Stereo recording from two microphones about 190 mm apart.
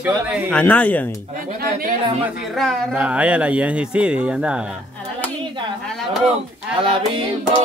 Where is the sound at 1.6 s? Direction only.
50° right (ahead or behind).